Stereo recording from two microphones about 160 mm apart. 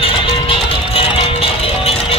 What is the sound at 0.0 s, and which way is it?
Music, 35° left (ahead or behind).